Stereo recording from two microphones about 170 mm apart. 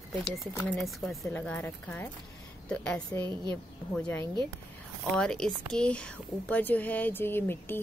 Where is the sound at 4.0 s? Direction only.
10° left (ahead or behind).